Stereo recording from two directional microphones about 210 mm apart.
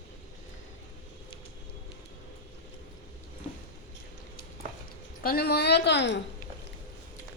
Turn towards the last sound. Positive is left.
turn(degrees=55)  # may be behind; listen again after turning